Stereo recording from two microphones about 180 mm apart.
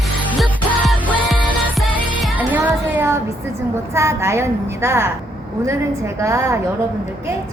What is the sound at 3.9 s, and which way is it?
A woman's voice, 15° right (ahead or behind).